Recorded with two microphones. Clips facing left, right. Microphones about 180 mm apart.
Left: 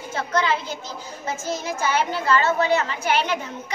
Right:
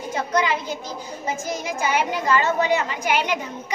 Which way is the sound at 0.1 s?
15° right (ahead or behind).